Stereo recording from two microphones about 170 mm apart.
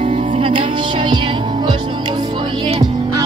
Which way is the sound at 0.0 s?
35° right (ahead or behind).